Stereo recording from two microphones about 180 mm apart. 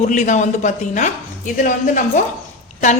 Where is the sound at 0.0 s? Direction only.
40° left (ahead or behind).